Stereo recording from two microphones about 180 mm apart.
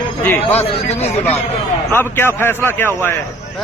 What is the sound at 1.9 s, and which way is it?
Speech, 10° left (ahead or behind).